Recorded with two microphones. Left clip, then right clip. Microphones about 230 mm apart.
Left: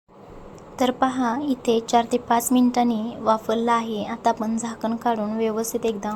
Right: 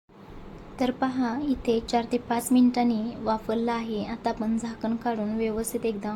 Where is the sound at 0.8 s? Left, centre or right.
Centre.